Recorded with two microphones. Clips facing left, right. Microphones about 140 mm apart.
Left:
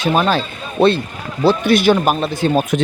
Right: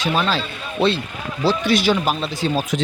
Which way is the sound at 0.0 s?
50° left (ahead or behind).